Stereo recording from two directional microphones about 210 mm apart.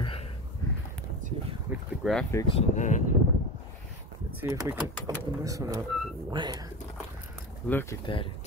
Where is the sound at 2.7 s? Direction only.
35° left (ahead or behind).